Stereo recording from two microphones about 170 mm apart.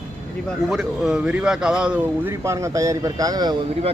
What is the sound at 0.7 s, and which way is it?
Speech, 5° right (ahead or behind).